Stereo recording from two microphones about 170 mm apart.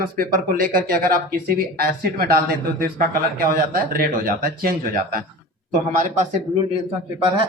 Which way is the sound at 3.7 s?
55° right (ahead or behind).